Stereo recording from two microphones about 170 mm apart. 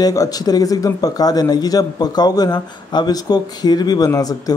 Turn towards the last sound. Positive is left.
turn(degrees=20)  # may be behind; listen again after turning